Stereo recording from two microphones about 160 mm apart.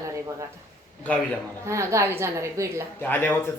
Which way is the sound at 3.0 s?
10° left (ahead or behind).